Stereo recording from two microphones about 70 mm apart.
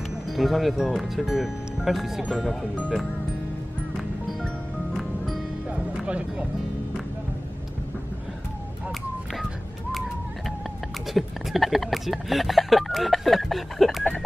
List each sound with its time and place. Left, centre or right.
0.3 s speech: centre
3.9 s music: centre
5.7 s music: centre
11.1 s speech: centre